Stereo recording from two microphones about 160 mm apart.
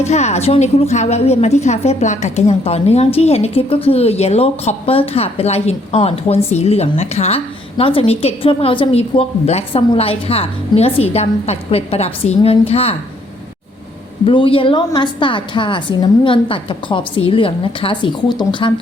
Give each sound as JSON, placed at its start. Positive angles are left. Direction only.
{"t": 0.0, "sound": "a woman's voice", "side_deg": 45}
{"t": 14.3, "sound": "a woman's voice", "side_deg": 35}